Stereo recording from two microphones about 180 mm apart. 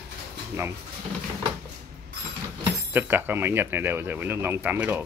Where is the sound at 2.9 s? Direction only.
10° right (ahead or behind).